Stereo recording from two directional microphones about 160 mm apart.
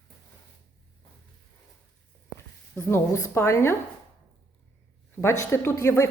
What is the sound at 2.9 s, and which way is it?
Speech, 20° left (ahead or behind).